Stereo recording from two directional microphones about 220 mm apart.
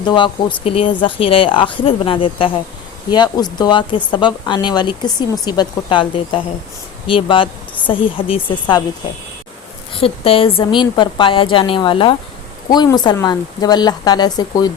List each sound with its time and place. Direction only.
0.0 s speech: 20° left (ahead or behind)
9.9 s speech: 25° left (ahead or behind)